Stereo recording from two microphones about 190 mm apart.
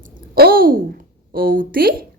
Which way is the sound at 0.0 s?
50° right (ahead or behind).